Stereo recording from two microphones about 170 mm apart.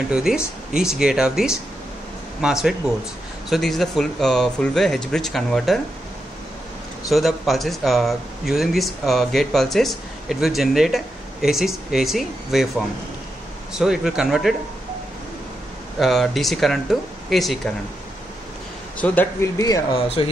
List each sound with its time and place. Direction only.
0.1 s speech: 5° right (ahead or behind)
7.1 s speech: centre (ahead or behind)
16.0 s speech: centre (ahead or behind)
18.9 s speech: 10° left (ahead or behind)
20.2 s speech: 30° left (ahead or behind)